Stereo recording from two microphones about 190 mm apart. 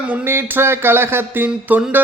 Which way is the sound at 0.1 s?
10° right (ahead or behind).